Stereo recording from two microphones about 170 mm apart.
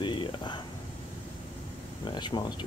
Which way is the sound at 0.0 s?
30° left (ahead or behind).